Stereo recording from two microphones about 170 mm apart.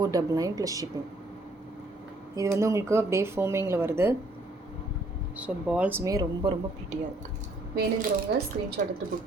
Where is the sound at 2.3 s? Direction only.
15° right (ahead or behind).